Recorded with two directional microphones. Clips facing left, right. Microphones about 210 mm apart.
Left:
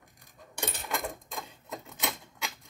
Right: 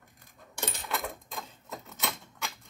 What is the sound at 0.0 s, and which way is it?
Keys jangling, 15° left (ahead or behind).